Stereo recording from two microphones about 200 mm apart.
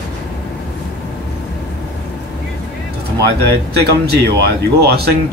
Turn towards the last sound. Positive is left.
turn(degrees=-55)  # may be behind; listen again after turning